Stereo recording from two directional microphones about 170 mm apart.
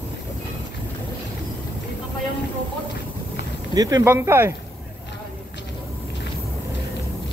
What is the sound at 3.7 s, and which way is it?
Speech, 20° right (ahead or behind).